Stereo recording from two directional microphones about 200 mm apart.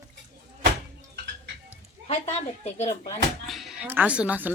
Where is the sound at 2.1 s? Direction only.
35° left (ahead or behind).